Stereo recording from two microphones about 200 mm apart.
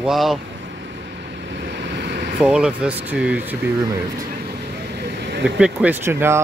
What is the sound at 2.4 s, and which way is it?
Speech, 5° right (ahead or behind).